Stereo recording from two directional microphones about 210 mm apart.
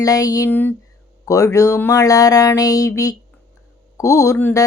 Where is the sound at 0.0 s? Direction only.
15° left (ahead or behind).